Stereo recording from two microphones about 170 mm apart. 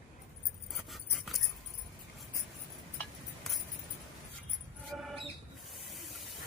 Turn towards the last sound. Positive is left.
turn(degrees=0)  # may be behind; listen again after turning